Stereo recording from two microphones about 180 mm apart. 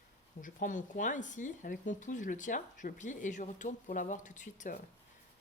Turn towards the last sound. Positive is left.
turn(degrees=45)  # may be behind; listen again after turning